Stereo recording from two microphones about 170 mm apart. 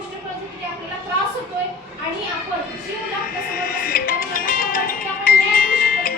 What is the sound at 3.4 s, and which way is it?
Music, 55° left (ahead or behind).